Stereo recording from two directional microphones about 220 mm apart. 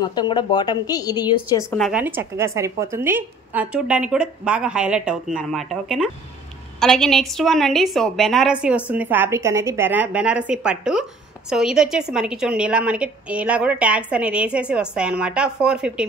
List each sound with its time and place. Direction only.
0.0 s a woman's voice: 20° left (ahead or behind)
1.8 s a woman's voice: 5° right (ahead or behind)